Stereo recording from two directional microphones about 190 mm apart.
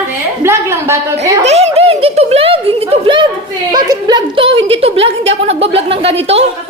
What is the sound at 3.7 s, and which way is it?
A woman's voice, 20° right (ahead or behind).